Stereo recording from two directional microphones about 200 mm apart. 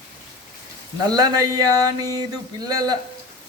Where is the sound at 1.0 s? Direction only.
20° right (ahead or behind).